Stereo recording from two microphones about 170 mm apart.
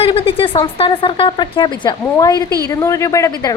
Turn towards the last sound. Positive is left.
turn(degrees=20)  # may be behind; listen again after turning